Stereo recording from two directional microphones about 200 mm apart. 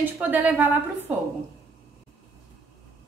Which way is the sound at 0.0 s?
10° right (ahead or behind).